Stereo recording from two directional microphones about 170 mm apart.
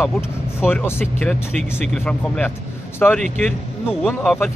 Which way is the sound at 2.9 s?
10° left (ahead or behind).